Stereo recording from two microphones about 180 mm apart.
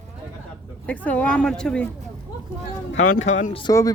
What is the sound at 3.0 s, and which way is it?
Speech, 45° left (ahead or behind).